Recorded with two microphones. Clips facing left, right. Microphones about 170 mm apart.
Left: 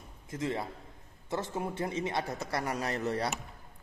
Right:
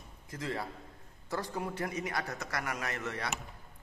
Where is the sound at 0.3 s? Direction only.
20° left (ahead or behind).